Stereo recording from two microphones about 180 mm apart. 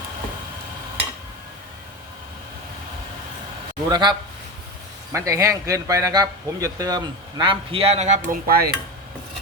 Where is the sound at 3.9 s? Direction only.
25° right (ahead or behind); by 8.7 s 55° right (ahead or behind).